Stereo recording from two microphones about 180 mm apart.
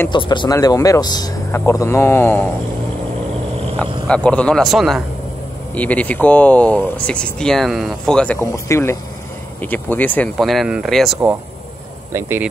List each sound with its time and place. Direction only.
0.1 s speech: 25° left (ahead or behind)
3.8 s speech: 5° left (ahead or behind)
8.4 s speech: 15° left (ahead or behind); by 11.1 s centre (ahead or behind)
12.1 s speech: 15° right (ahead or behind)